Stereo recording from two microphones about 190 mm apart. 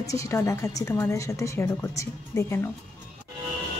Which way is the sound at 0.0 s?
15° left (ahead or behind).